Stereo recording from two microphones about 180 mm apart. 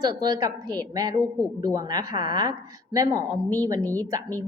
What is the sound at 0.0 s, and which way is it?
A woman's voice, 20° right (ahead or behind).